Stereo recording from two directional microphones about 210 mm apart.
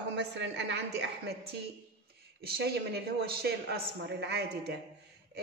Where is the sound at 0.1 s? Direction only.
55° right (ahead or behind).